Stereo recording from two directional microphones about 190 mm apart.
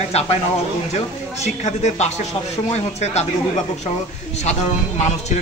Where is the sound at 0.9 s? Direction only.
35° left (ahead or behind).